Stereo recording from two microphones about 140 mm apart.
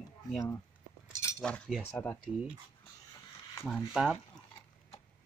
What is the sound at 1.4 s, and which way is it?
Speech, 5° left (ahead or behind).